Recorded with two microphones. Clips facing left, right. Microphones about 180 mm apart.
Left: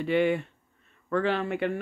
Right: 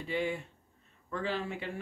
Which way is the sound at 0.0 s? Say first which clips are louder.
Left 9 dB; 70° left (ahead or behind).